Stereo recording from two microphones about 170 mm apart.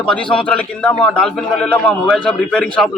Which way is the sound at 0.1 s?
5° left (ahead or behind).